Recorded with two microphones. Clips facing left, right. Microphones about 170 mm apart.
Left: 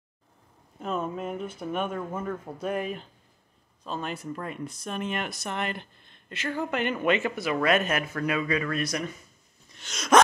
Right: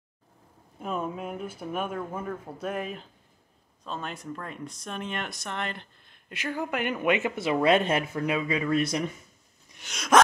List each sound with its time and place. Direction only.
0.7 s speech: 10° right (ahead or behind); by 5.9 s 5° left (ahead or behind)
6.0 s speech: 5° right (ahead or behind); by 8.0 s 30° right (ahead or behind)
8.1 s speech: 20° right (ahead or behind)
9.7 s a sound: 15° right (ahead or behind)